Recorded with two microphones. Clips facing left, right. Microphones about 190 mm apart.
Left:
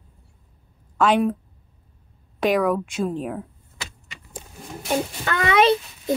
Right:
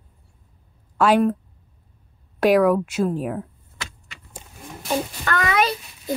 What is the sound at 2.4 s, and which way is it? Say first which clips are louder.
Speech: right 4 dB; 5° right (ahead or behind).